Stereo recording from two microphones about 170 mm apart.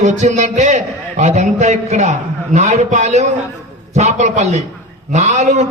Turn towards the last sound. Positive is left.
turn(degrees=-45)  # may be behind; listen again after turning